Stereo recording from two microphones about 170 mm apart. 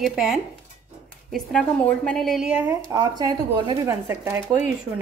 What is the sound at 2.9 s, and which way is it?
Speech, 20° right (ahead or behind).